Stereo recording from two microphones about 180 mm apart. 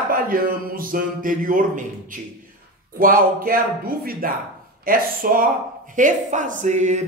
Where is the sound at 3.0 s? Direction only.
55° right (ahead or behind).